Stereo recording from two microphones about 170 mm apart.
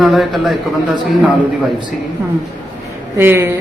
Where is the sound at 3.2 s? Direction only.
10° right (ahead or behind).